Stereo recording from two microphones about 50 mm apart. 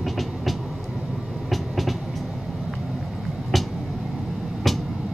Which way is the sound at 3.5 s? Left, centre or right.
Centre.